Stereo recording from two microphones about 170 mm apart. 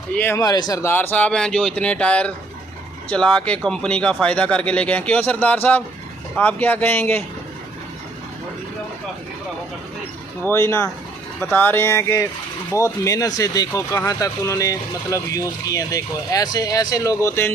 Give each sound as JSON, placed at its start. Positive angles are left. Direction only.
{"t": 0.2, "sound": "speech", "side_deg": 15}
{"t": 10.4, "sound": "speech", "side_deg": 15}